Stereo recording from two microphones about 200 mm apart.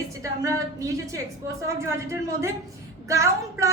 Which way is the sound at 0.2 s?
15° right (ahead or behind).